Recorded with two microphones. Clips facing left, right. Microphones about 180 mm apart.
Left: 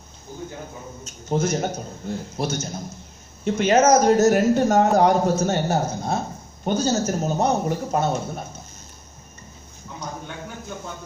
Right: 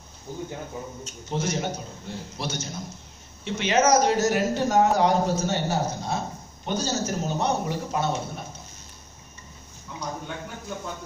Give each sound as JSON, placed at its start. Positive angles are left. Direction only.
{"t": 1.0, "sound": "speech", "side_deg": 45}